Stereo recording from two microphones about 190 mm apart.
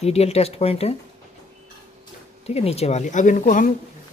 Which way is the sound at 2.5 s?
35° left (ahead or behind).